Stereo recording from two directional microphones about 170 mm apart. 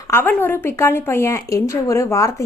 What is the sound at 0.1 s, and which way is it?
A woman's voice, 10° left (ahead or behind).